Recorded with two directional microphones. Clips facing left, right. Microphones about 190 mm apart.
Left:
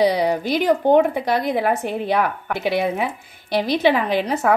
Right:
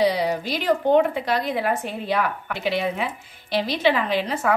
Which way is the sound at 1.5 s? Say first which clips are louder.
Left 4 dB; 50° left (ahead or behind).